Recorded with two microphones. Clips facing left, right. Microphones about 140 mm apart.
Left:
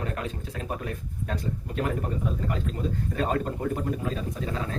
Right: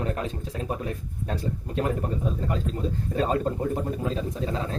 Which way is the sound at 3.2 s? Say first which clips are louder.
Right 4 dB; 30° right (ahead or behind).